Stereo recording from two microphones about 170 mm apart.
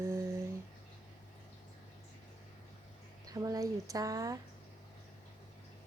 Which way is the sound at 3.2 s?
20° right (ahead or behind).